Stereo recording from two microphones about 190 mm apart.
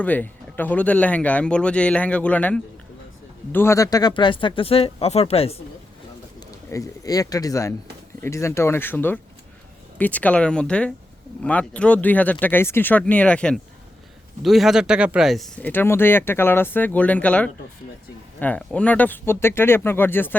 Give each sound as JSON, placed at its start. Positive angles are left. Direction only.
{"t": 0.0, "sound": "speech", "side_deg": 10}
{"t": 6.7, "sound": "speech", "side_deg": 15}